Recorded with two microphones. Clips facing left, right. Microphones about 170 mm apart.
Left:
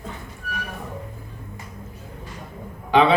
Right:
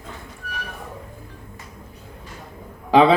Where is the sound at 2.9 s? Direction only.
35° right (ahead or behind).